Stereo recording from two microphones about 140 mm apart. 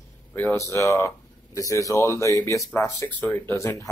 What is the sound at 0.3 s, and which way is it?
Speech, 10° left (ahead or behind).